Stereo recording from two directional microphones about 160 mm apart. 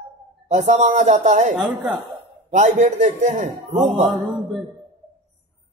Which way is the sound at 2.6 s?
45° right (ahead or behind).